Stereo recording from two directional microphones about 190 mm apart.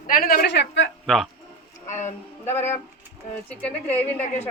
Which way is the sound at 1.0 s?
Centre (ahead or behind).